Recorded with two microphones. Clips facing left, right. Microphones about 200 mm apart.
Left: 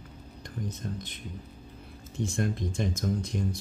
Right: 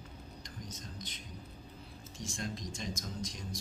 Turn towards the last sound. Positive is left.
turn(degrees=60)  # may be behind; listen again after turning